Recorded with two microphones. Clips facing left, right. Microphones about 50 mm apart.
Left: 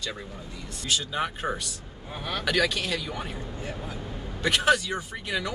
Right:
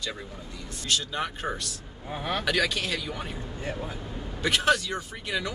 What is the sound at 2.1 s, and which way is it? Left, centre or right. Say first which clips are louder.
Speech: right 3 dB; right.